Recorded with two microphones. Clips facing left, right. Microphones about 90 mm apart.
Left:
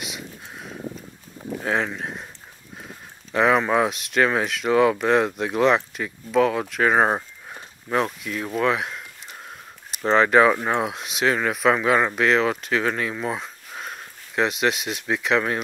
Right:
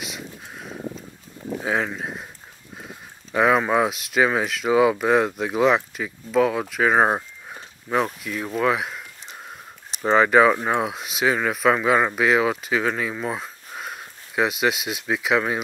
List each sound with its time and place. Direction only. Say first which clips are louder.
0.0 s a sound: right 1 dB; centre (ahead or behind)
1.5 s speech: even; 5° right (ahead or behind)
10.0 s speech: even; 5° right (ahead or behind)